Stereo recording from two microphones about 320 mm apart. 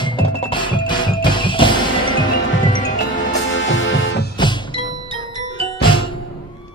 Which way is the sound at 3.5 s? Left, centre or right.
Left.